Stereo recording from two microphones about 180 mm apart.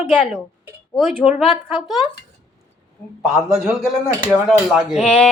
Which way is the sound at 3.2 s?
Centre (ahead or behind).